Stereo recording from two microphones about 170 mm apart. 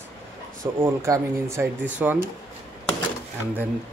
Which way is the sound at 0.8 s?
15° right (ahead or behind).